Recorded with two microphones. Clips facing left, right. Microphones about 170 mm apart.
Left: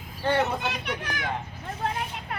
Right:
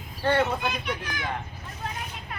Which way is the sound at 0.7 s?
65° left (ahead or behind).